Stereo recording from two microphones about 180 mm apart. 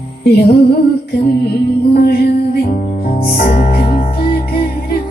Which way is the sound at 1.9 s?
60° left (ahead or behind).